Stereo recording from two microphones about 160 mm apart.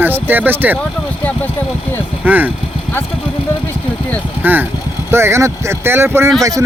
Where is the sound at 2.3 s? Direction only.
10° right (ahead or behind).